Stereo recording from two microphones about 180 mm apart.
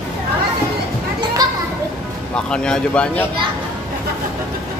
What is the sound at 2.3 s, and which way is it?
Speech, 5° left (ahead or behind).